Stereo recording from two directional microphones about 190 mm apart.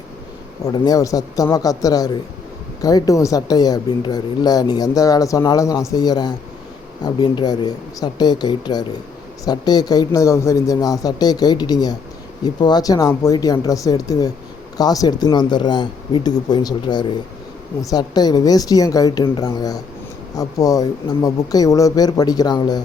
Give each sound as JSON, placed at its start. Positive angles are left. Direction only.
{"t": 0.6, "sound": "speech", "side_deg": 20}